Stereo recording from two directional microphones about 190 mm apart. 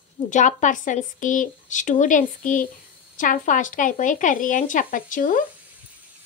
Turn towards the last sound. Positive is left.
turn(degrees=45)  # may be behind; listen again after turning